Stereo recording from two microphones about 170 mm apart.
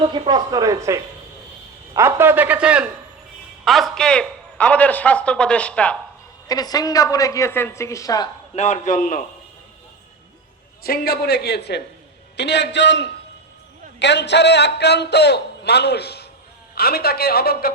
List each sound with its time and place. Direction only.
0.0 s a man's voice: 25° right (ahead or behind); by 6.0 s 5° left (ahead or behind)
6.5 s a woman's voice: 20° left (ahead or behind)
8.5 s a man's voice: 40° left (ahead or behind)
10.8 s a man's voice: 65° left (ahead or behind)
12.4 s a man's voice: 90° left; by 17.7 s 65° left (ahead or behind)